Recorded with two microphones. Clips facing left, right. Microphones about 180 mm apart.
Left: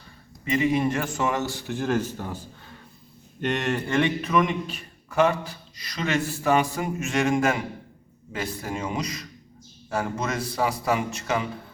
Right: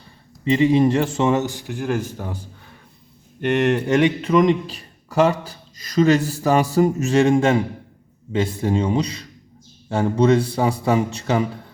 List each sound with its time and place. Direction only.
0.4 s a man's voice: 30° right (ahead or behind); by 2.5 s 15° right (ahead or behind)
3.7 s a man's voice: 15° right (ahead or behind)
4.2 s a man's voice: 30° right (ahead or behind)